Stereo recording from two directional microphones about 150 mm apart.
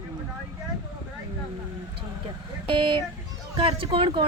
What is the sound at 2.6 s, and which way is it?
Speech, 35° right (ahead or behind).